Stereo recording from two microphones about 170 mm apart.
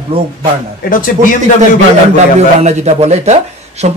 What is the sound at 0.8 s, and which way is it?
Speech, 55° left (ahead or behind).